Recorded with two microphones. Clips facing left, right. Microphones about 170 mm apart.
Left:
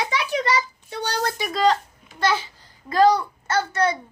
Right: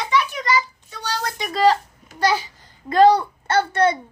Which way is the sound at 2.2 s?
10° right (ahead or behind).